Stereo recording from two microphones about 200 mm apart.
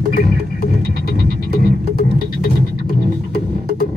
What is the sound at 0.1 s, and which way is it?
Music, 45° left (ahead or behind).